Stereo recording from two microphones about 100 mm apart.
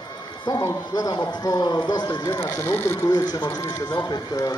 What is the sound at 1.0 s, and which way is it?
Speech, 40° left (ahead or behind).